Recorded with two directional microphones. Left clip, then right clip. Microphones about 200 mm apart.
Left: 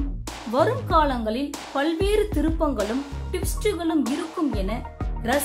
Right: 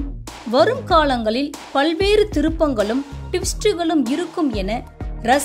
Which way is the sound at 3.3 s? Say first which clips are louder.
Right 7 dB; 20° right (ahead or behind).